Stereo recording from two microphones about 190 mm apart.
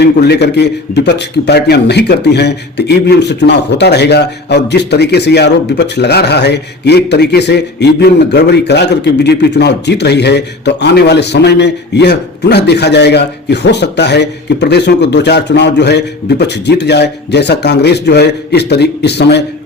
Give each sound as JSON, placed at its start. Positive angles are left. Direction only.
{"t": 0.0, "sound": "a man's voice", "side_deg": 60}